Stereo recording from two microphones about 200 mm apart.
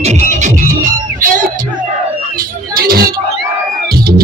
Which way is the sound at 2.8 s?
50° right (ahead or behind).